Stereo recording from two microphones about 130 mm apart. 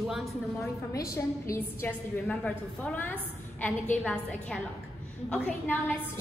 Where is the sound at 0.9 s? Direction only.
25° left (ahead or behind).